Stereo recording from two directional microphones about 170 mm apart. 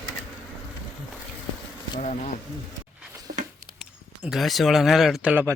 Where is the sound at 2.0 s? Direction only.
45° left (ahead or behind).